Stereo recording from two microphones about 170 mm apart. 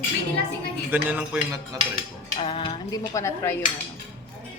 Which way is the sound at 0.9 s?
10° right (ahead or behind).